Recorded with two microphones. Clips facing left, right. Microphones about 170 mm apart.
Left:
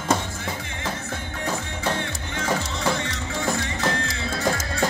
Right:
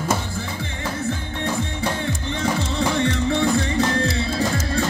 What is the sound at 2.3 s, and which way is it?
Music, 35° right (ahead or behind).